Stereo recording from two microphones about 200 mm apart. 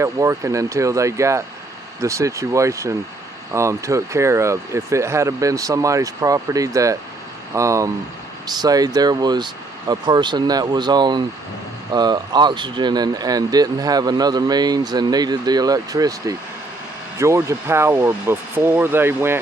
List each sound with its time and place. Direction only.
0.0 s speech: 15° right (ahead or behind)